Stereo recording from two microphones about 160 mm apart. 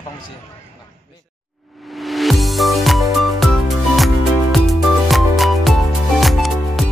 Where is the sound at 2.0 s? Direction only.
Centre (ahead or behind).